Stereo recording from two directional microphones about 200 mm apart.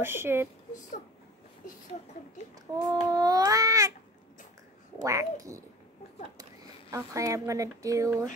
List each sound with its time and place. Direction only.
0.0 s speech: 10° right (ahead or behind)
2.7 s speech: 20° right (ahead or behind)
5.0 s speech: 15° right (ahead or behind)
6.9 s speech: 15° right (ahead or behind)